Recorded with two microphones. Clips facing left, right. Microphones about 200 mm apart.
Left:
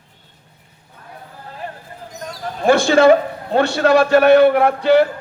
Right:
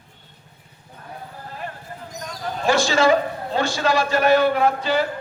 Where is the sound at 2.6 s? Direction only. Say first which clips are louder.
Left 7 dB; 60° left (ahead or behind).